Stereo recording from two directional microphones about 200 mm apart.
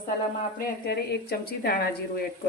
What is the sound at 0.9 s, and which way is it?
Speech, 50° left (ahead or behind).